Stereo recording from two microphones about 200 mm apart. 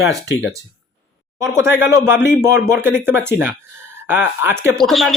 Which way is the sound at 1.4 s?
15° right (ahead or behind).